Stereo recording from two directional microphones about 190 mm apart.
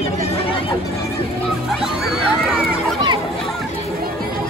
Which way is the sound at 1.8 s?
Centre (ahead or behind).